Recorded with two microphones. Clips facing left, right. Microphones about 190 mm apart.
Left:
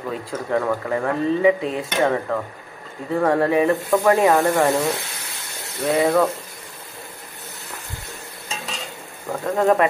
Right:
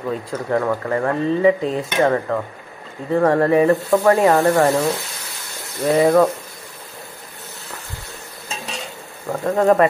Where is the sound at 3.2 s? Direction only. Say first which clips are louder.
Right 3 dB; centre (ahead or behind).